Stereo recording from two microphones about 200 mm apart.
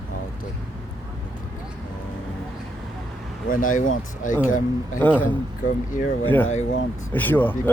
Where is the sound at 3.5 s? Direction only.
40° left (ahead or behind).